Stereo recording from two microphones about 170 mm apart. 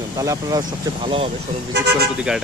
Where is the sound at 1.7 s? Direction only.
75° right (ahead or behind).